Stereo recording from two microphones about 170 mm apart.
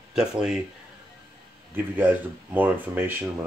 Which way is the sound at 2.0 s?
10° right (ahead or behind).